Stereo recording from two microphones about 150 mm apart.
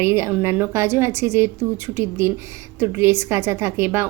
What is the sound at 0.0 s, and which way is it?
A woman's voice, 15° right (ahead or behind).